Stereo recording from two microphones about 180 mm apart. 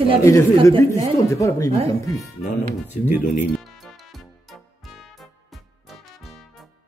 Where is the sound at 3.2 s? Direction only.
45° left (ahead or behind).